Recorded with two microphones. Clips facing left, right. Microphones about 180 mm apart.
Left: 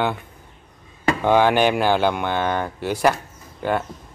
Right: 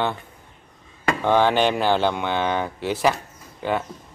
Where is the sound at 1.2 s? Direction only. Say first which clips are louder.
Left 2 dB; 10° left (ahead or behind).